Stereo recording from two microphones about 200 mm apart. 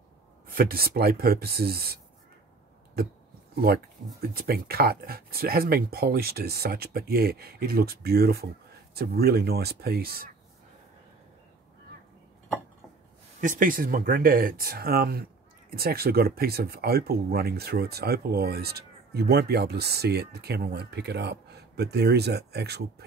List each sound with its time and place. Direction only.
0.5 s speech: 50° right (ahead or behind)
3.5 s speech: 50° right (ahead or behind)
13.4 s speech: 40° right (ahead or behind)